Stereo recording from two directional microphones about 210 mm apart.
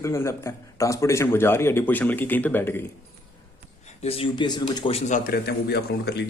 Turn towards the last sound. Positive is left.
turn(degrees=50)  # may be behind; listen again after turning